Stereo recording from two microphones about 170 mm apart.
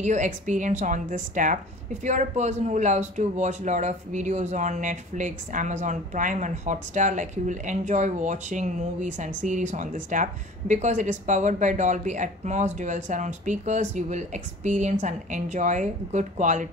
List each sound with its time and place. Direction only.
0.0 s speech: 45° right (ahead or behind)